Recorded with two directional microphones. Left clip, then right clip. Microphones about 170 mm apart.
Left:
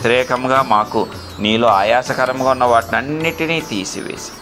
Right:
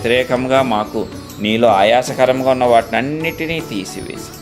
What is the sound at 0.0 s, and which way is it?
Speech, 15° right (ahead or behind).